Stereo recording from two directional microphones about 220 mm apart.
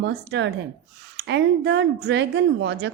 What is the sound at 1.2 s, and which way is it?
A woman's voice, 55° right (ahead or behind).